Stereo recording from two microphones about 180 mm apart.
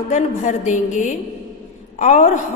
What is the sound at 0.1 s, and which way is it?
A woman's voice, 40° left (ahead or behind).